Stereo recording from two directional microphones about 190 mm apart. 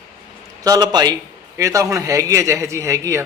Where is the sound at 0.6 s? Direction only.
20° right (ahead or behind).